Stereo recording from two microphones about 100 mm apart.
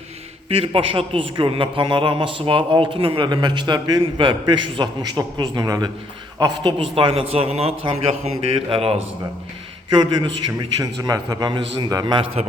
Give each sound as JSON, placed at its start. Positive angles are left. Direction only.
{"t": 0.4, "sound": "a man's voice", "side_deg": -65}
{"t": 3.2, "sound": "a man's voice", "side_deg": -50}
{"t": 10.8, "sound": "a man's voice", "side_deg": -35}
{"t": 12.4, "sound": "a man's voice", "side_deg": -90}